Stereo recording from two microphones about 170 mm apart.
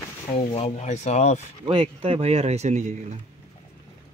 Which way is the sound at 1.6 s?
30° right (ahead or behind).